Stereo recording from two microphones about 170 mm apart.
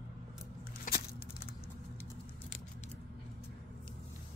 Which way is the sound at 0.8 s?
65° left (ahead or behind).